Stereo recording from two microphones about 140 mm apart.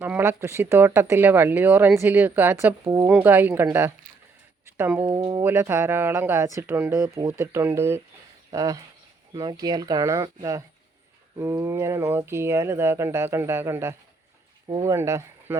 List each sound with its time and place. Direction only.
0.0 s speech: 15° right (ahead or behind)